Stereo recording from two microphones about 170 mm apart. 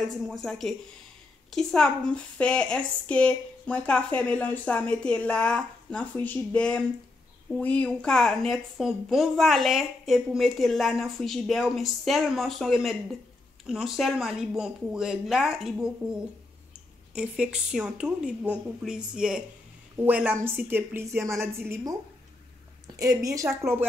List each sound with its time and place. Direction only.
0.3 s a woman's voice: centre (ahead or behind)
17.1 s a woman's voice: 5° right (ahead or behind)
22.9 s a woman's voice: 20° right (ahead or behind)